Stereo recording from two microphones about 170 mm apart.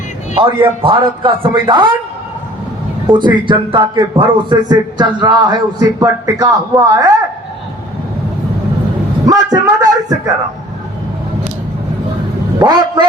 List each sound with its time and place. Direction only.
0.8 s speech: 30° right (ahead or behind)
3.1 s a man's voice: 30° right (ahead or behind)
9.2 s a sound: 20° right (ahead or behind)
12.5 s vehicle: 25° right (ahead or behind)